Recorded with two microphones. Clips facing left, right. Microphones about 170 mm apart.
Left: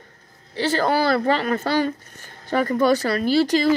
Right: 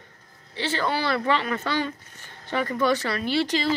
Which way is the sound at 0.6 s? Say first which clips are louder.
Left 6 dB; 40° left (ahead or behind).